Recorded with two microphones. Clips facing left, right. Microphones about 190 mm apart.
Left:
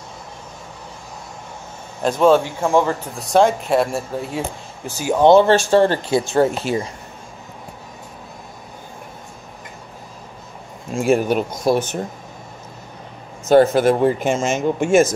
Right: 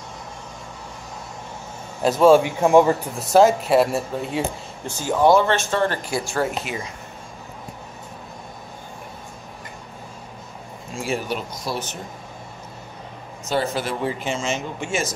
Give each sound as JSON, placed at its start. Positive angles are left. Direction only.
{"t": 2.0, "sound": "speech", "side_deg": -5}
{"t": 3.2, "sound": "speech", "side_deg": -5}
{"t": 5.2, "sound": "speech", "side_deg": 25}
{"t": 11.0, "sound": "speech", "side_deg": 50}
{"t": 13.5, "sound": "speech", "side_deg": 50}